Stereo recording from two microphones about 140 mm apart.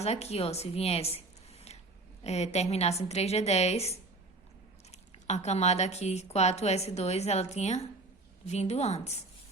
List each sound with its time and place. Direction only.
0.0 s speech: 50° left (ahead or behind)